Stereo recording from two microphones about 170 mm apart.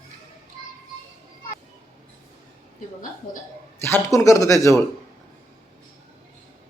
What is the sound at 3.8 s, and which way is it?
A man's voice, 15° left (ahead or behind).